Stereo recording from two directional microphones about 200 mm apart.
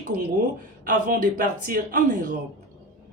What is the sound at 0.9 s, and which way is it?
Speech, 40° right (ahead or behind).